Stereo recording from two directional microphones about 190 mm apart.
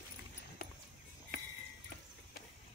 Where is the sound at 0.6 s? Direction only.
50° left (ahead or behind).